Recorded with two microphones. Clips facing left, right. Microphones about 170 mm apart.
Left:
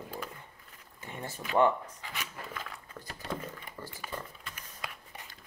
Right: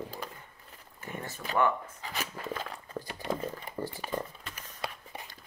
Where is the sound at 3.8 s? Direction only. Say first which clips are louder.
Right 10 dB; 25° right (ahead or behind).